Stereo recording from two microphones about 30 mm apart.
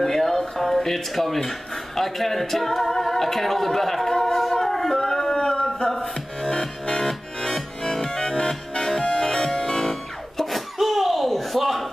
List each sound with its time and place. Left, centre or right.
0.0 s speech: centre
2.9 s singing: centre
5.3 s a sound: left
6.4 s music: centre
9.0 s music: left; by 10.5 s centre
10.5 s a sound: centre